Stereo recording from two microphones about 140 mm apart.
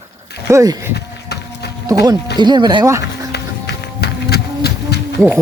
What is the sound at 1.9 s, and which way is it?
Speech, 25° right (ahead or behind).